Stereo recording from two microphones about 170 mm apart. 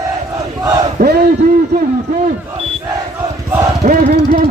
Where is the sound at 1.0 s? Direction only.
70° right (ahead or behind).